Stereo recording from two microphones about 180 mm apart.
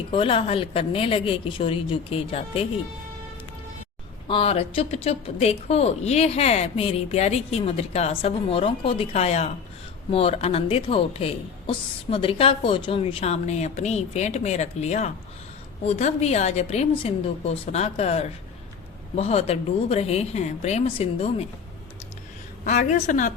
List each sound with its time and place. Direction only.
0.1 s a woman's voice: 30° left (ahead or behind)
4.3 s a woman's voice: 30° left (ahead or behind)
22.6 s a woman's voice: 40° left (ahead or behind)